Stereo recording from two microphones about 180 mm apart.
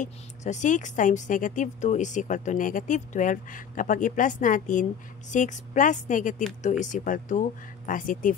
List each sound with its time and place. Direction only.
0.0 s speech: 40° left (ahead or behind)